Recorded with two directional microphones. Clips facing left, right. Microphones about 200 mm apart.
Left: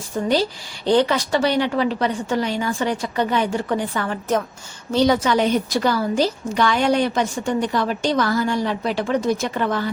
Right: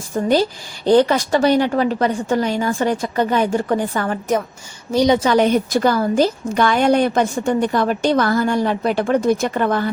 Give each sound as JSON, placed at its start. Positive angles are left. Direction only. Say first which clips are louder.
{"t": 0.1, "sound": "a woman's voice", "louder": "right 3 dB", "side_deg": -45}
{"t": 4.9, "sound": "a woman's voice", "louder": "right 2 dB", "side_deg": -15}
{"t": 5.2, "sound": "a woman's voice", "louder": "right 4 dB", "side_deg": -50}